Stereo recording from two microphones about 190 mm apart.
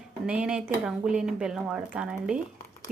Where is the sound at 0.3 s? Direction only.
5° right (ahead or behind).